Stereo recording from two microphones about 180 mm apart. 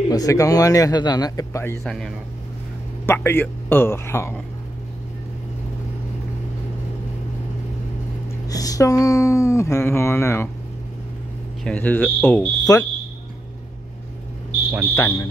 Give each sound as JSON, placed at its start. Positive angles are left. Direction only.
{"t": 0.1, "sound": "a man's voice", "side_deg": 20}
{"t": 1.9, "sound": "a man's voice", "side_deg": 0}
{"t": 3.1, "sound": "speech", "side_deg": 10}
{"t": 8.3, "sound": "speech", "side_deg": 20}
{"t": 11.6, "sound": "speech", "side_deg": 10}
{"t": 15.0, "sound": "speech", "side_deg": 15}